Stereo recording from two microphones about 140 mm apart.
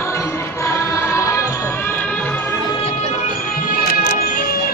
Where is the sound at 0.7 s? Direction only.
20° left (ahead or behind).